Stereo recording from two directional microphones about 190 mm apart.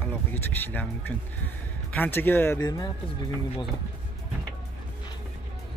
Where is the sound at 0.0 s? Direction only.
10° left (ahead or behind).